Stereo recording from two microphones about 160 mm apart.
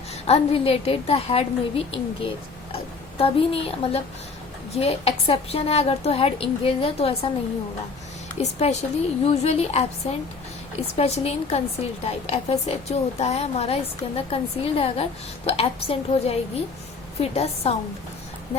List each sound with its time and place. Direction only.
0.3 s a woman's voice: 40° left (ahead or behind)
8.4 s a woman's voice: 45° left (ahead or behind)